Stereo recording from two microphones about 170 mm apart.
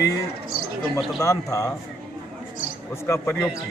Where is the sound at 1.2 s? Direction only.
20° left (ahead or behind).